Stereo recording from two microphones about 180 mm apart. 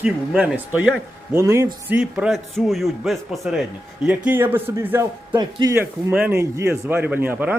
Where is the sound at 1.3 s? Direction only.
15° right (ahead or behind).